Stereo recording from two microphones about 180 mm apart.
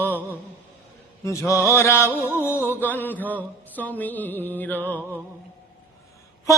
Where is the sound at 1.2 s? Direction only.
15° left (ahead or behind).